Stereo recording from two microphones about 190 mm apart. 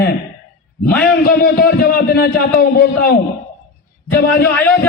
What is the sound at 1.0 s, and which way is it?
A man's voice, 50° left (ahead or behind).